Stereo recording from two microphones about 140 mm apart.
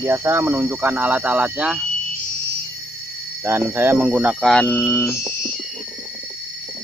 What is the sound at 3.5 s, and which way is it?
Speech, 15° right (ahead or behind).